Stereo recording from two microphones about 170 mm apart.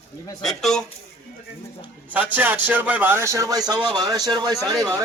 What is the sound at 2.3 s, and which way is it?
Speech, 10° right (ahead or behind).